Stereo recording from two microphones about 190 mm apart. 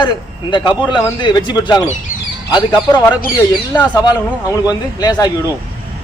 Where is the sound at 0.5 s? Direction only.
25° left (ahead or behind).